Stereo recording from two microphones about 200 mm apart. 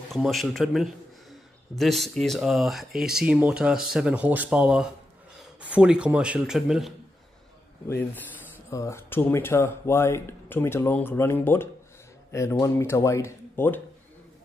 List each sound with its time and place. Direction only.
0.1 s speech: centre (ahead or behind)
8.6 s speech: 15° left (ahead or behind)